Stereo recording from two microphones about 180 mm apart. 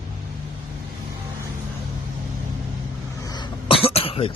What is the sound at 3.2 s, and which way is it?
Cough, 25° left (ahead or behind).